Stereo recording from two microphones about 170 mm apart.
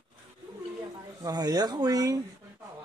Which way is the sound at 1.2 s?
20° right (ahead or behind).